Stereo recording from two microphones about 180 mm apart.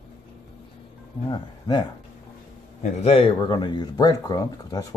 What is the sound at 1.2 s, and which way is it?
Speech, 25° left (ahead or behind).